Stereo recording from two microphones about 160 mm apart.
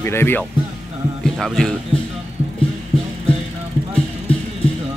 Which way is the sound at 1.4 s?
5° left (ahead or behind).